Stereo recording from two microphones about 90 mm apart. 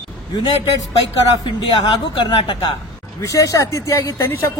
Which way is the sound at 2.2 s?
55° left (ahead or behind).